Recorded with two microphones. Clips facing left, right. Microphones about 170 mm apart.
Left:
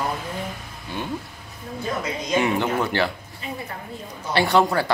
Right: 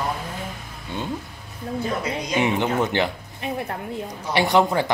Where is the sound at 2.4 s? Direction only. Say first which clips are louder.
Right 2 dB; 20° right (ahead or behind).